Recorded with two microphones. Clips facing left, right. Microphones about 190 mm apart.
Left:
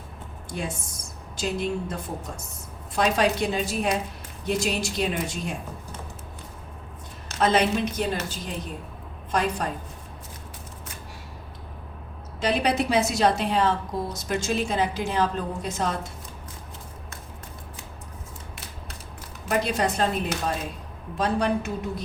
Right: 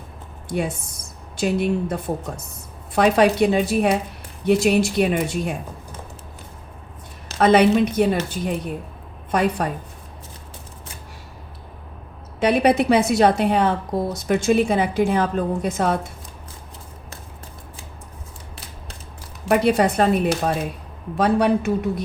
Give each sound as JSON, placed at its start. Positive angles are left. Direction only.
{"t": 0.4, "sound": "a woman's voice", "side_deg": -60}
{"t": 7.3, "sound": "a woman's voice", "side_deg": -60}
{"t": 12.4, "sound": "a woman's voice", "side_deg": -60}
{"t": 19.5, "sound": "a woman's voice", "side_deg": -60}